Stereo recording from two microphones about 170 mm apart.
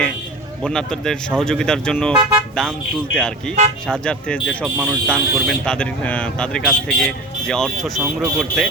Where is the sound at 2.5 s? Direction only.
5° left (ahead or behind).